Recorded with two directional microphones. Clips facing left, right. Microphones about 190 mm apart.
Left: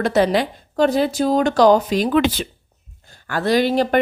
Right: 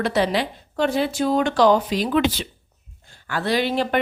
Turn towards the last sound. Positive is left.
turn(degrees=40)  # may be behind; listen again after turning